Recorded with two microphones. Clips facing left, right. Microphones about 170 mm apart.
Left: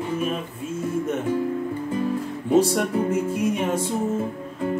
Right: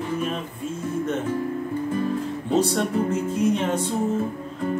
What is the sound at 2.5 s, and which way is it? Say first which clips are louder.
Music: left 3 dB; 10° left (ahead or behind).